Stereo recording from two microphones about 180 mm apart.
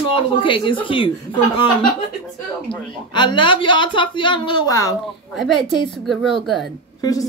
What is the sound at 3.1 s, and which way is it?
A woman's voice, 25° left (ahead or behind).